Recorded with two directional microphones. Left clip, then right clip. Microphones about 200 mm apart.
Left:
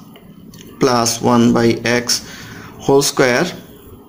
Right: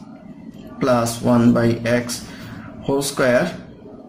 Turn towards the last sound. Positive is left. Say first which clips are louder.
# left 3 dB
turn(degrees=45)  # may be behind; listen again after turning